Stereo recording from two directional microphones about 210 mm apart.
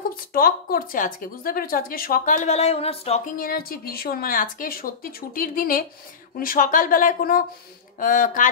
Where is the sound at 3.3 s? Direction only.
45° left (ahead or behind).